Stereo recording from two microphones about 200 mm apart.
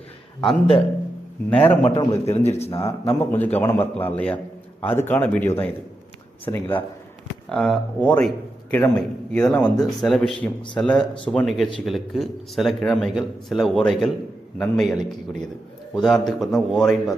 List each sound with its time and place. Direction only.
1.5 s speech: 5° left (ahead or behind)
1.8 s a man's voice: 30° left (ahead or behind)
3.3 s speech: 10° left (ahead or behind)